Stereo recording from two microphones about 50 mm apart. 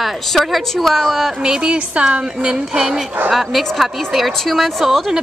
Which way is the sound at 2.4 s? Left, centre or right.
Centre.